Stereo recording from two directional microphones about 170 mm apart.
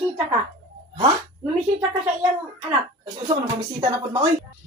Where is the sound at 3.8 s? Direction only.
20° right (ahead or behind).